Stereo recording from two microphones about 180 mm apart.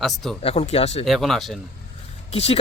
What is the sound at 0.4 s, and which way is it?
Speech, 35° left (ahead or behind).